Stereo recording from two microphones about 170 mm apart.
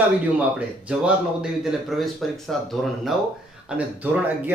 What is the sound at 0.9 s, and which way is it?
Speech, 5° right (ahead or behind).